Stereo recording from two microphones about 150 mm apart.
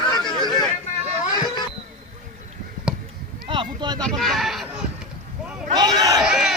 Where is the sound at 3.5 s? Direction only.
30° right (ahead or behind).